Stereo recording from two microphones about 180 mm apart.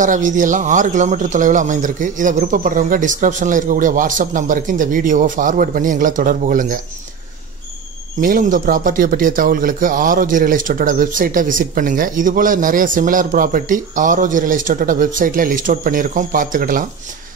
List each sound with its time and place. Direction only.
0.0 s speech: 45° right (ahead or behind)
8.2 s speech: 50° right (ahead or behind)